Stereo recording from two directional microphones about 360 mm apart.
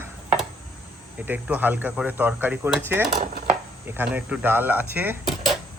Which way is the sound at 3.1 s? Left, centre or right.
Right.